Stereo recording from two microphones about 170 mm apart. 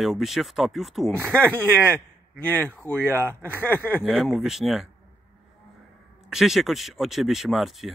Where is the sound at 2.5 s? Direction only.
10° left (ahead or behind).